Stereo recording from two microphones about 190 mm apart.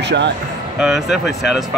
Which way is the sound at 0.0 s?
65° right (ahead or behind).